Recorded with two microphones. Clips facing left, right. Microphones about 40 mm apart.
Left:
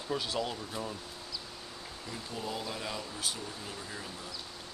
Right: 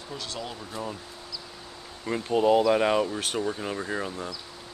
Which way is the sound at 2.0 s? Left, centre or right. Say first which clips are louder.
Right 17 dB; right.